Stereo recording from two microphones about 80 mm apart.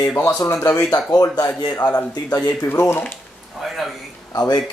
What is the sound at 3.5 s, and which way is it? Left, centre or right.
Speech, centre.